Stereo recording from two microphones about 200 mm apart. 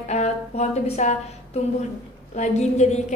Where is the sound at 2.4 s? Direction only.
35° left (ahead or behind).